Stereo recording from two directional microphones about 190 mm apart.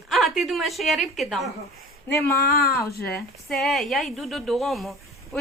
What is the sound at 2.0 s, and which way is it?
Speech, 15° left (ahead or behind).